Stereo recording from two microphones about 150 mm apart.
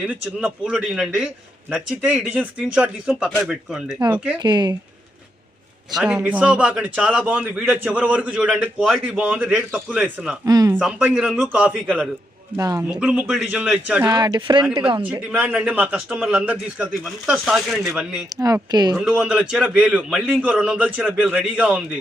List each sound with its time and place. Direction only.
0.0 s a man's voice: 5° right (ahead or behind)
4.4 s speech: 30° right (ahead or behind)
5.9 s a man's voice: 5° right (ahead or behind)
10.4 s speech: 25° right (ahead or behind)
10.8 s a man's voice: 5° right (ahead or behind)
12.5 s speech: 20° right (ahead or behind)
12.9 s a man's voice: 5° right (ahead or behind)
14.1 s speech: 30° right (ahead or behind)
15.0 s a man's voice: 10° right (ahead or behind)
18.3 s speech: 25° right (ahead or behind)
18.9 s a man's voice: 5° right (ahead or behind)